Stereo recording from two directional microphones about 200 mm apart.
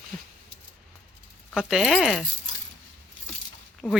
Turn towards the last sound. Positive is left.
turn(degrees=5)  # may be behind; listen again after turning